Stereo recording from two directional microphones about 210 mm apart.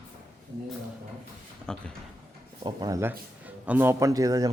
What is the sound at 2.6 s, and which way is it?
A man's voice, 20° right (ahead or behind).